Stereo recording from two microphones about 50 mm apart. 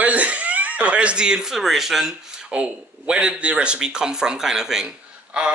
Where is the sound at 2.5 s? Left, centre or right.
Centre.